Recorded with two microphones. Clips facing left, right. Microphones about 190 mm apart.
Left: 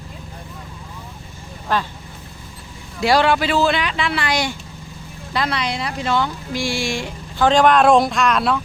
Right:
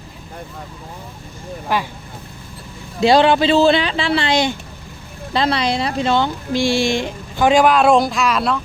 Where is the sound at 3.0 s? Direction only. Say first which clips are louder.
Right 4 dB; 20° right (ahead or behind).